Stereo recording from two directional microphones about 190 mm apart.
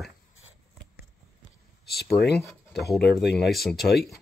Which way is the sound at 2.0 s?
Centre (ahead or behind).